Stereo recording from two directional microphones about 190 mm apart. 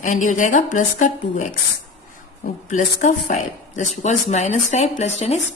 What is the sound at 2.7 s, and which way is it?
A woman's voice, 40° left (ahead or behind).